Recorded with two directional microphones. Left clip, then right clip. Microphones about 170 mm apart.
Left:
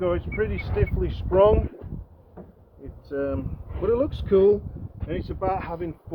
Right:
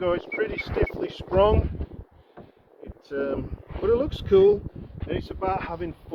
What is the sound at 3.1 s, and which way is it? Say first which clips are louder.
Speech: even; 30° right (ahead or behind).